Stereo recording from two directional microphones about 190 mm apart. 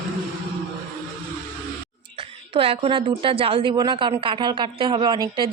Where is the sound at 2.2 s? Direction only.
30° right (ahead or behind).